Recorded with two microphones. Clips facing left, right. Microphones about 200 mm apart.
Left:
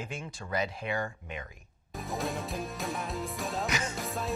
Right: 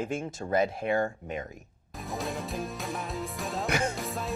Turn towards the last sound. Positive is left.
turn(degrees=0)  # may be behind; listen again after turning